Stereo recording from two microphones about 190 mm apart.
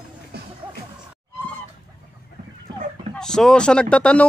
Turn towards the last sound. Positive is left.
turn(degrees=5)  # may be behind; listen again after turning